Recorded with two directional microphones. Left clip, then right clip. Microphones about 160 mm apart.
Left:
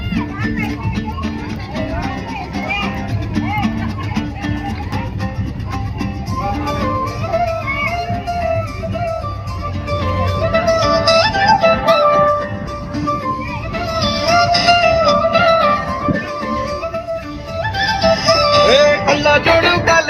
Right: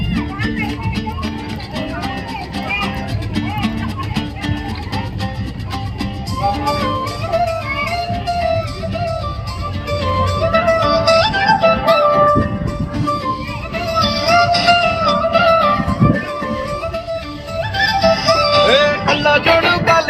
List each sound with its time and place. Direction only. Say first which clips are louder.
3.3 s music: left 2 dB; 35° right (ahead or behind)
6.0 s music: right 3 dB; 35° right (ahead or behind)
10.0 s music: right 2 dB; 40° right (ahead or behind); by 12.5 s 10° right (ahead or behind)
13.1 s music: even; 35° right (ahead or behind)
17.6 s music: right 1 dB; 30° right (ahead or behind); by 20.1 s 5° right (ahead or behind)